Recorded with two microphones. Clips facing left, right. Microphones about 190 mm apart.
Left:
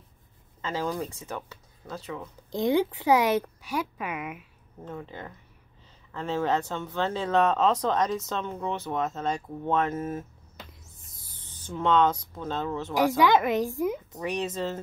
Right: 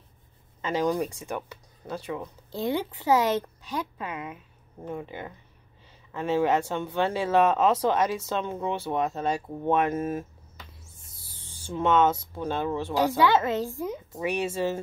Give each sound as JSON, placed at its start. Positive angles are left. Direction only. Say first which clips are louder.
{"t": 0.6, "sound": "speech", "louder": "right 4 dB", "side_deg": -15}
{"t": 2.5, "sound": "a woman's voice", "louder": "left 4 dB", "side_deg": 15}
{"t": 4.8, "sound": "speech", "louder": "right 3 dB", "side_deg": -15}
{"t": 10.9, "sound": "a sound", "louder": "right 1 dB", "side_deg": -10}
{"t": 13.2, "sound": "a woman's voice", "louder": "left 1 dB", "side_deg": 15}
{"t": 14.1, "sound": "speech", "louder": "right 2 dB", "side_deg": -10}